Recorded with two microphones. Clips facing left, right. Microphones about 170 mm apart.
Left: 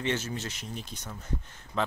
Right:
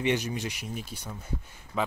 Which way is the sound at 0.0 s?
15° right (ahead or behind).